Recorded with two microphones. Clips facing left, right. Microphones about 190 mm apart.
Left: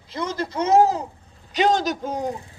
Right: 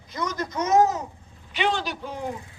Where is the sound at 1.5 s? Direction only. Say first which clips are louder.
Left 6 dB; 40° left (ahead or behind).